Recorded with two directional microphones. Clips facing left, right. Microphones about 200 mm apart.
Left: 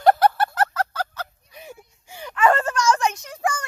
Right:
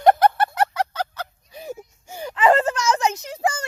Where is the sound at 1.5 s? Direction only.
40° right (ahead or behind).